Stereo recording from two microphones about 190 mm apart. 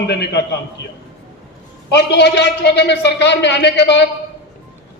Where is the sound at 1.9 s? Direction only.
65° left (ahead or behind).